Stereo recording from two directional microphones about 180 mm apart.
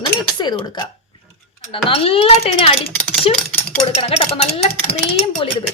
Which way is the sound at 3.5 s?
10° left (ahead or behind).